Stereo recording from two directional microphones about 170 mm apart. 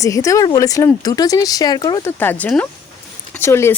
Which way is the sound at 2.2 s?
10° left (ahead or behind).